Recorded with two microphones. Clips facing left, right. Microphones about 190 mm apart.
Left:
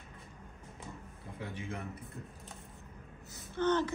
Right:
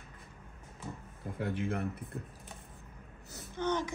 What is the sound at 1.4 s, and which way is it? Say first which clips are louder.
Speech: right 7 dB; 55° right (ahead or behind).